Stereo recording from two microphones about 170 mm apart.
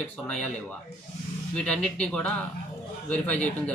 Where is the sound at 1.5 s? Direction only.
5° left (ahead or behind).